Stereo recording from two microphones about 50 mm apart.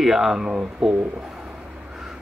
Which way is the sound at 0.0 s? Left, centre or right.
Centre.